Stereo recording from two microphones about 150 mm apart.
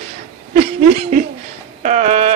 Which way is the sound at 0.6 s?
45° right (ahead or behind).